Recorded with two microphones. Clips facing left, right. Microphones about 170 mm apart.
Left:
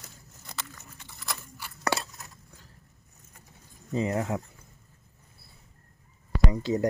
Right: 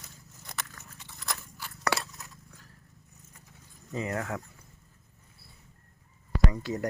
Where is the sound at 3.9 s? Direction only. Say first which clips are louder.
Left 5 dB; 25° left (ahead or behind).